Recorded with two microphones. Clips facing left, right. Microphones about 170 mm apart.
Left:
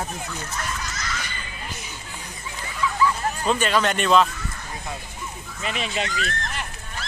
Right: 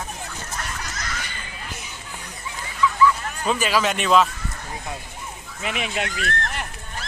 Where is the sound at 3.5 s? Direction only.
5° right (ahead or behind).